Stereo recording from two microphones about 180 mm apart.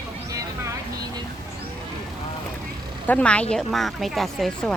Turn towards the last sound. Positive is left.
turn(degrees=0)  # may be behind; listen again after turning